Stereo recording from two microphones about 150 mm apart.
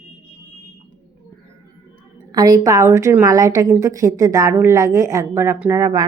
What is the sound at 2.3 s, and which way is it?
A woman's voice, 25° right (ahead or behind).